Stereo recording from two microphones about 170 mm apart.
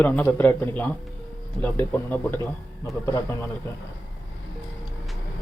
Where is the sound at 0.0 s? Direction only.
10° left (ahead or behind).